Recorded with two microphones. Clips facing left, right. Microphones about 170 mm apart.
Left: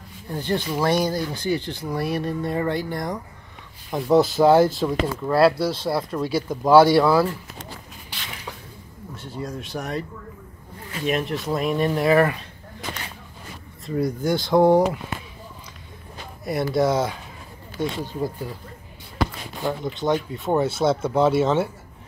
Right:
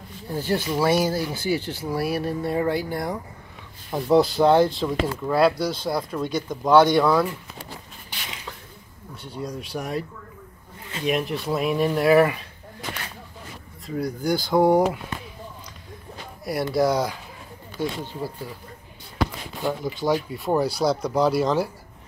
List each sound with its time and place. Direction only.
0.3 s speech: 5° right (ahead or behind)
9.1 s speech: centre (ahead or behind)
11.1 s speech: centre (ahead or behind)
13.8 s speech: centre (ahead or behind)
16.7 s speech: centre (ahead or behind)
17.7 s speech: 15° left (ahead or behind)
19.6 s speech: centre (ahead or behind)